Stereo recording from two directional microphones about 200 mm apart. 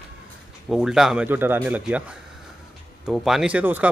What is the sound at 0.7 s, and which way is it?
Speech, centre (ahead or behind).